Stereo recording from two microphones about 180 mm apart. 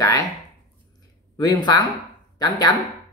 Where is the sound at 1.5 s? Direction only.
25° left (ahead or behind).